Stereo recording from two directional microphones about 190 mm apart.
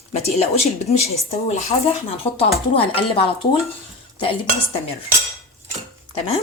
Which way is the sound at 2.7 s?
30° left (ahead or behind).